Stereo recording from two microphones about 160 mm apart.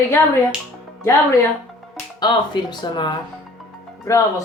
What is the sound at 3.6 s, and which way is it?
Music, centre (ahead or behind).